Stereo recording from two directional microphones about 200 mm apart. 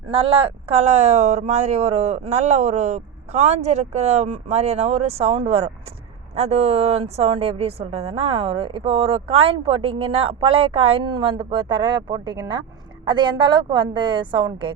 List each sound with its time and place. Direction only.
0.1 s a woman's voice: 25° right (ahead or behind)